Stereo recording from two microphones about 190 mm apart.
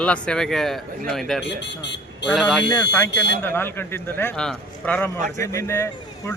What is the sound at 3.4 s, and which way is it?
A man's voice, 10° left (ahead or behind).